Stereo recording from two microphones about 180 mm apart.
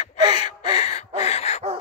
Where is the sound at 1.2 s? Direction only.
35° left (ahead or behind).